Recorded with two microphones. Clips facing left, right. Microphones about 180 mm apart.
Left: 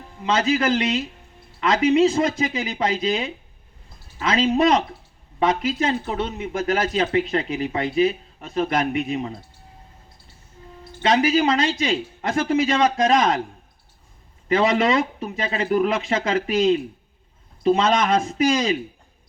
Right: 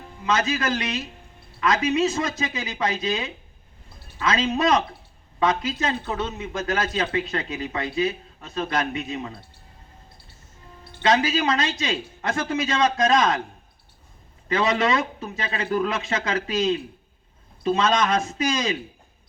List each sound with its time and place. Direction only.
0.3 s speech: 25° left (ahead or behind)
11.0 s speech: 25° left (ahead or behind)
14.4 s speech: 25° left (ahead or behind)